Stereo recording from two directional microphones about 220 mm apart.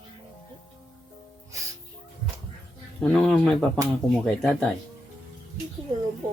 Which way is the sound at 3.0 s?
5° left (ahead or behind).